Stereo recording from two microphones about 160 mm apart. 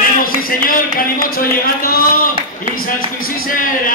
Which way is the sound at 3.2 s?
60° left (ahead or behind).